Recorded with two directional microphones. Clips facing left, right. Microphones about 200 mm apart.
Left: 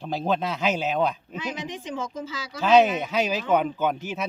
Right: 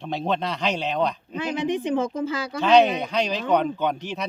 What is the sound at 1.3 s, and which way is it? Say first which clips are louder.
Speech: right 8 dB; 55° right (ahead or behind).